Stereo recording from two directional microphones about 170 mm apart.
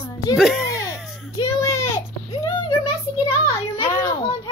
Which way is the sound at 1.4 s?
20° left (ahead or behind).